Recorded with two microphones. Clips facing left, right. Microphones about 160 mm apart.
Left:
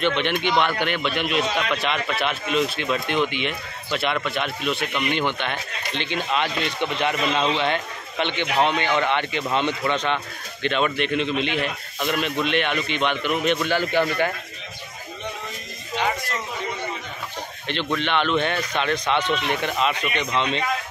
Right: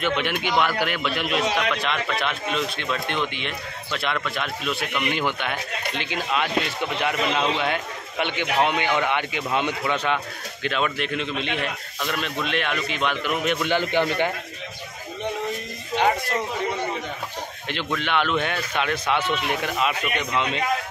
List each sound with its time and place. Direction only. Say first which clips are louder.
0.0 s a man's voice: left 2 dB; 5° right (ahead or behind)
13.7 s a man's voice: even; 20° right (ahead or behind)
17.9 s speech: left 1 dB; 5° right (ahead or behind)